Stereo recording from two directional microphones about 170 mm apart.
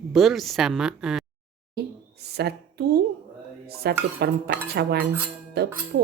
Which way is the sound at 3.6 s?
65° right (ahead or behind).